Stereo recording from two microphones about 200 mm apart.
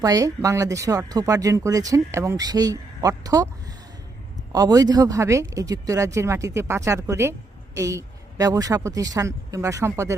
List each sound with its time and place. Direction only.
0.0 s speech: 15° right (ahead or behind)
4.5 s speech: 20° right (ahead or behind)